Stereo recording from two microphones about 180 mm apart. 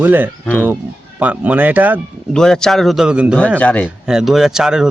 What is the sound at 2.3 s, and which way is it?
Speech, 5° left (ahead or behind).